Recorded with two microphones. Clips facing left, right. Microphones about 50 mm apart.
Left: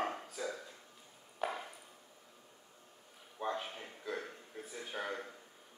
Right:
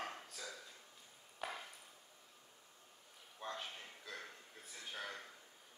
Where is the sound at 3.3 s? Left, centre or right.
Centre.